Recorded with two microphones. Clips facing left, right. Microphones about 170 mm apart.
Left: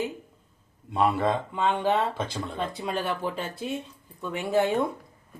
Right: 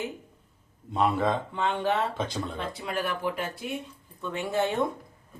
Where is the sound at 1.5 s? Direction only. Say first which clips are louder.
Left 2 dB; 15° left (ahead or behind).